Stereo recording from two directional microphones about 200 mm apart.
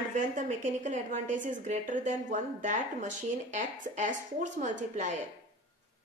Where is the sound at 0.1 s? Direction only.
35° right (ahead or behind).